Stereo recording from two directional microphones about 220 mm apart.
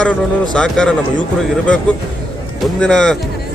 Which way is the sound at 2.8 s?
5° left (ahead or behind).